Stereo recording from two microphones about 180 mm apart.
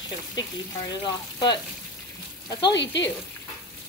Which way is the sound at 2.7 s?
80° left.